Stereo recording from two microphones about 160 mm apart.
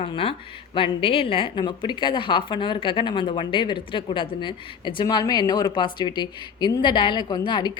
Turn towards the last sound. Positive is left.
turn(degrees=25)  # may be behind; listen again after turning